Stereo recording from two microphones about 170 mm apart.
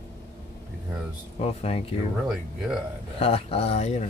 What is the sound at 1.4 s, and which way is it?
Speech, 35° left (ahead or behind).